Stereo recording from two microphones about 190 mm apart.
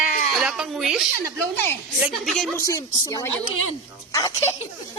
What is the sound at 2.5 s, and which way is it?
Speech, 15° left (ahead or behind).